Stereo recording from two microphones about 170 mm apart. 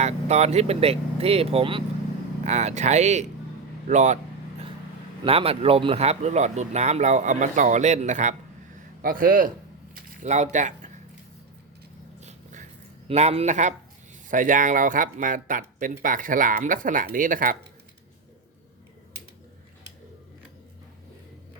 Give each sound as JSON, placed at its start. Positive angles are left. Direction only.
{"t": 0.0, "sound": "speech", "side_deg": -40}
{"t": 5.2, "sound": "speech", "side_deg": -35}
{"t": 9.0, "sound": "speech", "side_deg": -55}
{"t": 9.9, "sound": "speech", "side_deg": -40}
{"t": 12.2, "sound": "a sound", "side_deg": -45}
{"t": 13.1, "sound": "speech", "side_deg": -40}